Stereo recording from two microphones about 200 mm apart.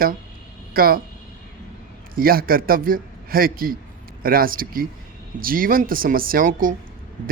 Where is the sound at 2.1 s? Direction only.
45° right (ahead or behind).